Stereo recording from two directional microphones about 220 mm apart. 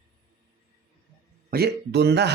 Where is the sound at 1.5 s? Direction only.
45° right (ahead or behind).